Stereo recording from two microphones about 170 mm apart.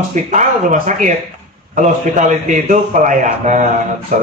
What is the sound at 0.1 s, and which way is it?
Speech, 45° right (ahead or behind).